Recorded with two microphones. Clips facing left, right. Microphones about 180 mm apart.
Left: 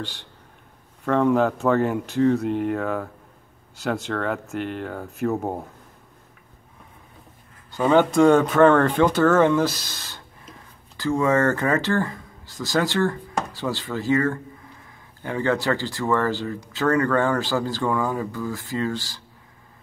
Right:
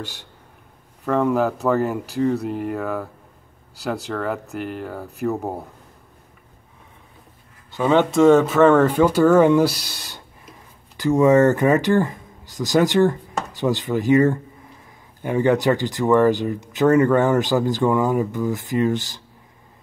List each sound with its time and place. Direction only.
0.0 s speech: 10° right (ahead or behind)
7.7 s speech: centre (ahead or behind); by 19.2 s 20° right (ahead or behind)